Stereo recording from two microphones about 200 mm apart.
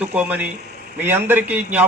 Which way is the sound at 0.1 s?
5° right (ahead or behind).